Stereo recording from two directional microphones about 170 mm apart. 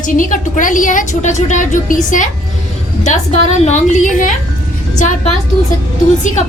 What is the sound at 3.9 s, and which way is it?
Speech, 45° left (ahead or behind).